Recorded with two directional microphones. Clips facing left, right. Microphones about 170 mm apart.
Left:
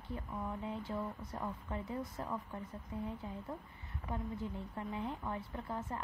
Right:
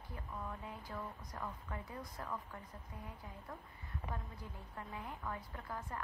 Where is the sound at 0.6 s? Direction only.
25° left (ahead or behind).